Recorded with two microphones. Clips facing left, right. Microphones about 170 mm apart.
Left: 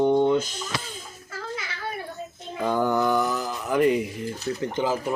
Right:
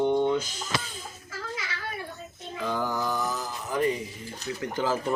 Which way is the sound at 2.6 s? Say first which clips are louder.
Left 7 dB; 50° left (ahead or behind).